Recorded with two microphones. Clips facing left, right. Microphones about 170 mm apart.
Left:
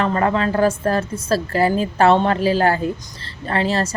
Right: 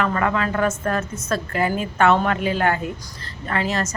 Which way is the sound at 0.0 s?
30° left (ahead or behind).